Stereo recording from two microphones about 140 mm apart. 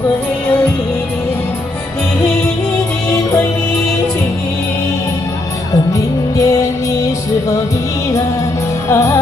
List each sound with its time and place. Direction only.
5.9 s music: 25° left (ahead or behind)
8.8 s music: 20° left (ahead or behind)